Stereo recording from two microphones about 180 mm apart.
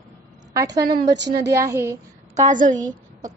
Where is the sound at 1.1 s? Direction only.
75° right (ahead or behind).